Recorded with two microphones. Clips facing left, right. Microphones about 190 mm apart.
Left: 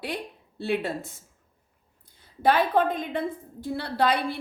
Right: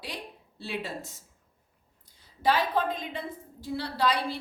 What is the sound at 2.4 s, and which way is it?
Speech, 55° left (ahead or behind).